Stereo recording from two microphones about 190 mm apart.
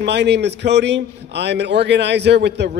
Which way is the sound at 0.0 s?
65° right (ahead or behind).